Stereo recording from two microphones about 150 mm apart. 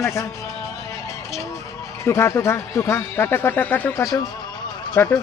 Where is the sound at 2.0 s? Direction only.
15° left (ahead or behind).